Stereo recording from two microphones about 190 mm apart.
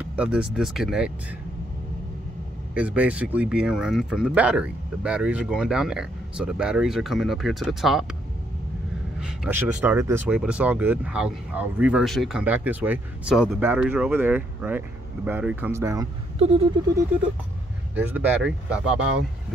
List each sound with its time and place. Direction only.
0.1 s speech: 5° right (ahead or behind)
2.7 s speech: 5° right (ahead or behind)
9.2 s speech: 5° right (ahead or behind)
16.3 s a sound: 30° right (ahead or behind)
17.9 s speech: 10° right (ahead or behind)